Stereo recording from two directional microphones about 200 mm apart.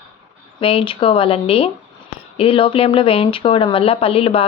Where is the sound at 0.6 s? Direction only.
25° left (ahead or behind).